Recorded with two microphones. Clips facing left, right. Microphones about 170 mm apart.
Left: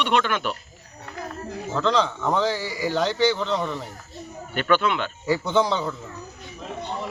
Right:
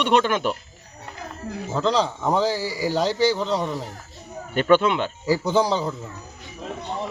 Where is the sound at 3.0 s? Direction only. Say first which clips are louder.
Right 1 dB; 35° right (ahead or behind).